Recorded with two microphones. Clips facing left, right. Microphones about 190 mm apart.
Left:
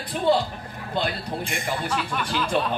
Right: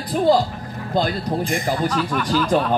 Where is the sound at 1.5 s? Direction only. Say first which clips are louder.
Right 5 dB; 40° right (ahead or behind).